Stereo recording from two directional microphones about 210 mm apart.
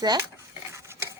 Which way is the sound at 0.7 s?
10° right (ahead or behind).